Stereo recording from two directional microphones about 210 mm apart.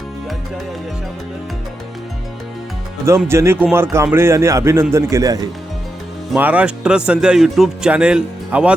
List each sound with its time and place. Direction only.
3.2 s a man's voice: 10° right (ahead or behind)